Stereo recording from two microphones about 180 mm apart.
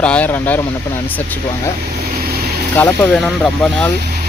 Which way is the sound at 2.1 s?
55° right (ahead or behind).